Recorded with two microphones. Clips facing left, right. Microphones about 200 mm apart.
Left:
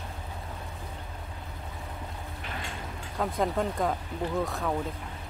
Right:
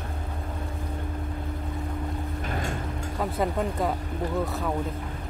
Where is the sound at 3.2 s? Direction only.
5° right (ahead or behind).